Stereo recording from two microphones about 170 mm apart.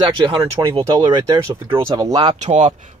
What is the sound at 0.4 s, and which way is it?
Speech, 20° right (ahead or behind).